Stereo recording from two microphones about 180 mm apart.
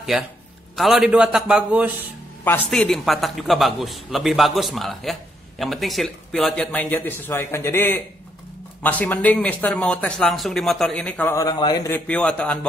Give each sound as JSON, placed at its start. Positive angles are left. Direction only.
{"t": 0.7, "sound": "a man's voice", "side_deg": 0}
{"t": 2.4, "sound": "a man's voice", "side_deg": 10}
{"t": 11.3, "sound": "speech", "side_deg": 25}
{"t": 12.1, "sound": "speech", "side_deg": 5}